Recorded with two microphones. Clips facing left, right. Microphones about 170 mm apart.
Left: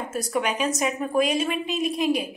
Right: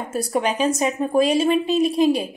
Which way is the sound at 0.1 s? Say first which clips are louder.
Right 5 dB; 35° right (ahead or behind).